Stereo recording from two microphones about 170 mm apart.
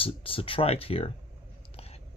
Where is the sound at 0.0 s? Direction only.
35° left (ahead or behind).